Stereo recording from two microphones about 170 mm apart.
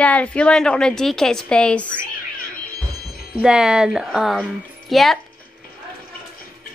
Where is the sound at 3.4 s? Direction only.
5° right (ahead or behind).